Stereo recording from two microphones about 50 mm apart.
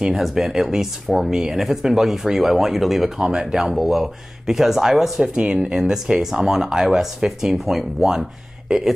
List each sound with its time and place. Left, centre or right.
0.1 s speech: centre
5.3 s speech: centre
5.8 s speech: centre